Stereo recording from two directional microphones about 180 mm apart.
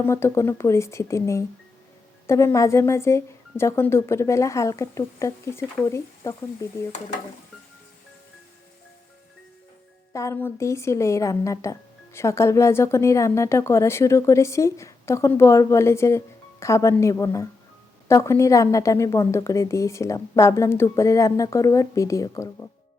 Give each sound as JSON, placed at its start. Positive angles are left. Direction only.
{"t": 0.0, "sound": "speech", "side_deg": 15}
{"t": 10.1, "sound": "speech", "side_deg": 15}